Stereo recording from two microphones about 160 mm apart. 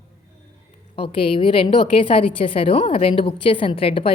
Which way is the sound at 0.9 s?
35° left (ahead or behind).